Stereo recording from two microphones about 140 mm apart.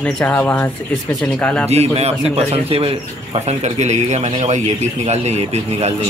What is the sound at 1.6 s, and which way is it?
Speech, 50° right (ahead or behind).